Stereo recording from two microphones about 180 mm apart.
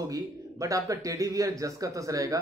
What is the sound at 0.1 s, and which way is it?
Speech, 20° right (ahead or behind).